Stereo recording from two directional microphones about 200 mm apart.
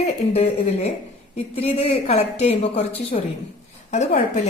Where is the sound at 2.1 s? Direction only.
30° left (ahead or behind).